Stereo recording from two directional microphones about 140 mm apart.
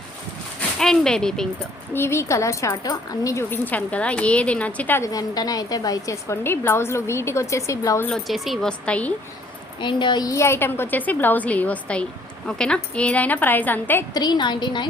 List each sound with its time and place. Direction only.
0.8 s speech: 5° left (ahead or behind)
1.9 s a woman's voice: 15° left (ahead or behind)
8.0 s a woman's voice: centre (ahead or behind)
9.8 s a woman's voice: 35° left (ahead or behind); by 14.0 s 15° left (ahead or behind)
14.1 s a woman's voice: 30° left (ahead or behind)